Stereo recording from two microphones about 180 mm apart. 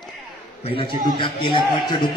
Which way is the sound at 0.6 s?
30° left (ahead or behind).